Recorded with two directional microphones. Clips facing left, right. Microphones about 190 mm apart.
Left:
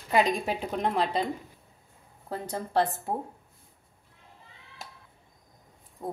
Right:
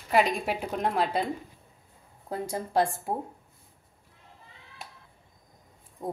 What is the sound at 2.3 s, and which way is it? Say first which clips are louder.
Speech: right 1 dB; 10° right (ahead or behind).